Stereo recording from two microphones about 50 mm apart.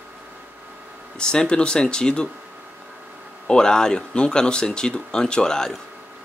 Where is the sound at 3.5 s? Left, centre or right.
Centre.